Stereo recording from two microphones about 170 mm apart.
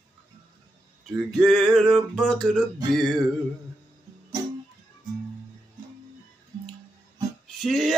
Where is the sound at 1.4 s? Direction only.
5° left (ahead or behind).